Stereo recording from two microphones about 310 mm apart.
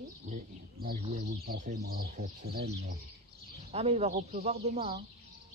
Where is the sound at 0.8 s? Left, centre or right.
Right.